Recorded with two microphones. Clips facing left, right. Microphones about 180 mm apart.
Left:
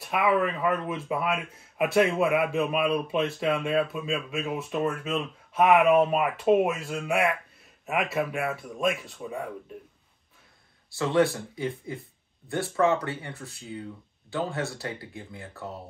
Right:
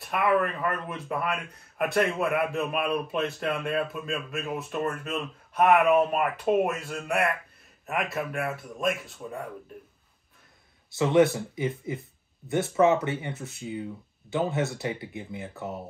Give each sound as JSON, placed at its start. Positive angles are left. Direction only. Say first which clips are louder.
{"t": 0.0, "sound": "speech", "louder": "even", "side_deg": 0}
{"t": 10.9, "sound": "speech", "louder": "right 3 dB", "side_deg": -20}